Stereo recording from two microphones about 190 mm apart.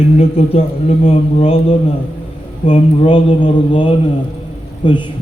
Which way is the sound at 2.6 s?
30° left (ahead or behind).